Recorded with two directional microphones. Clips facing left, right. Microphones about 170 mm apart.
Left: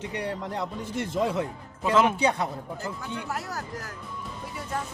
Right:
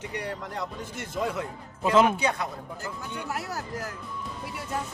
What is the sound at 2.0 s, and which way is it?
Speech, 30° left (ahead or behind).